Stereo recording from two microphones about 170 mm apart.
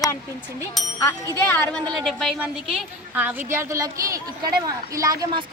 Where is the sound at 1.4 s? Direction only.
10° left (ahead or behind).